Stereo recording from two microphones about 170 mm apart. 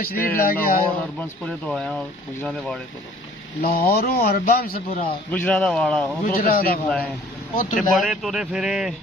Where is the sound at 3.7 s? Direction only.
60° left (ahead or behind).